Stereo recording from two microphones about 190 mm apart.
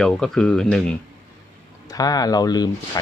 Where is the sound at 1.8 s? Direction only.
20° left (ahead or behind).